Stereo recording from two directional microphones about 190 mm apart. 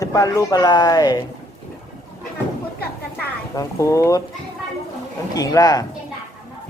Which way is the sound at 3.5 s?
15° left (ahead or behind).